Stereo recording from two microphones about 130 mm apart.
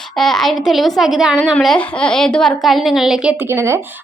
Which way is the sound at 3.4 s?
20° right (ahead or behind).